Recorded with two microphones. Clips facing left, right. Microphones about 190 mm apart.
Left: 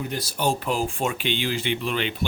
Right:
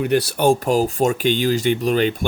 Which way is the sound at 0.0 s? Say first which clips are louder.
Right 9 dB; 70° right (ahead or behind).